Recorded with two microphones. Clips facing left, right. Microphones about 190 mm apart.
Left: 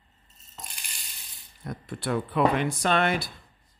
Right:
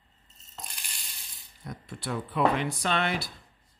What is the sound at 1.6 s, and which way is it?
Speech, 55° left (ahead or behind).